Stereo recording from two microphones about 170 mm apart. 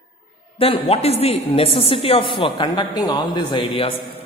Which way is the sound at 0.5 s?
35° left (ahead or behind).